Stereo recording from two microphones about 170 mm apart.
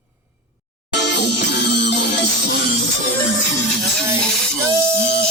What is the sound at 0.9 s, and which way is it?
Music, 90° left.